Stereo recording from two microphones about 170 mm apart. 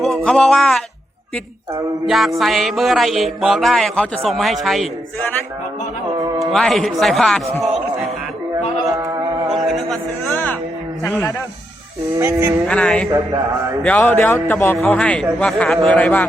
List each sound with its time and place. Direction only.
0.0 s speech: centre (ahead or behind)
2.0 s speech: centre (ahead or behind)
6.1 s music: 20° right (ahead or behind)
6.5 s speech: centre (ahead or behind)
7.6 s a sound: centre (ahead or behind)
8.9 s music: 20° right (ahead or behind)
9.6 s a sound: centre (ahead or behind)
12.2 s music: 15° right (ahead or behind)
12.6 s a man's voice: 5° left (ahead or behind)